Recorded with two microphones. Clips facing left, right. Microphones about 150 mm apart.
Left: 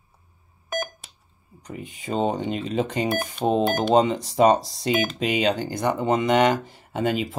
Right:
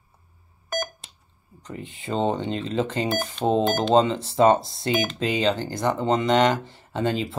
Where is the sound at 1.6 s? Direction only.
15° left (ahead or behind).